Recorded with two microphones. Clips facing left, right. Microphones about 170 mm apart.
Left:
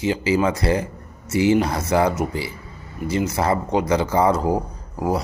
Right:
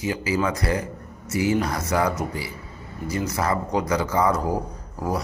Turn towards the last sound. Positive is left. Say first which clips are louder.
# left 4 dB
turn(degrees=25)  # may be behind; listen again after turning